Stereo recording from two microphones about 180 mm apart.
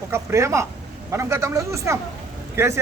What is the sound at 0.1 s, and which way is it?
Speech, 15° right (ahead or behind).